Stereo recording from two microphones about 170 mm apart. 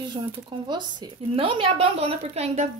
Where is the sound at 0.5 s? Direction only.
25° right (ahead or behind).